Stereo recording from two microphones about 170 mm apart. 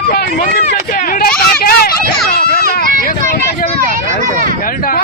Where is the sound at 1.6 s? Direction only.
60° left (ahead or behind).